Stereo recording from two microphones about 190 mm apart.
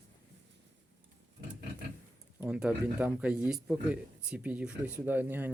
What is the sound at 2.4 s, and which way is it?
A man's voice, 5° right (ahead or behind).